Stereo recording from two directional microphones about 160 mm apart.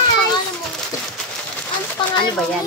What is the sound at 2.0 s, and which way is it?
Speech, 30° left (ahead or behind).